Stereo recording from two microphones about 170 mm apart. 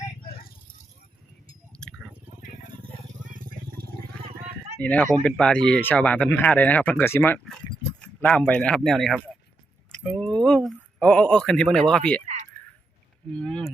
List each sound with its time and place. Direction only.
1.8 s chewing: 5° left (ahead or behind)
3.3 s vehicle: 60° right (ahead or behind)
4.8 s speech: 10° left (ahead or behind)
9.9 s a sound: 5° left (ahead or behind)
13.3 s speech: 5° left (ahead or behind)